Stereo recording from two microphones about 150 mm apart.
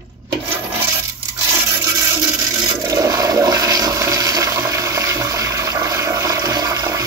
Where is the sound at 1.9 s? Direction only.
20° right (ahead or behind).